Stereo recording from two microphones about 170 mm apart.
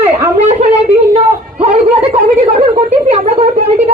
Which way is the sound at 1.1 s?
35° right (ahead or behind).